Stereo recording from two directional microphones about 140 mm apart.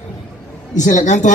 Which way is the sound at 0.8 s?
60° left (ahead or behind).